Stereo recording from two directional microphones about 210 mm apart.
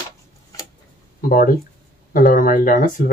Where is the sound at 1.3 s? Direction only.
40° left (ahead or behind).